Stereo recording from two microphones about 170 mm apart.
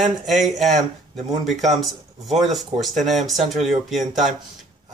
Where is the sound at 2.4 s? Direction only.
Centre (ahead or behind).